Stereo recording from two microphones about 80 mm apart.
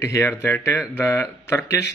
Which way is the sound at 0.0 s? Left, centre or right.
Left.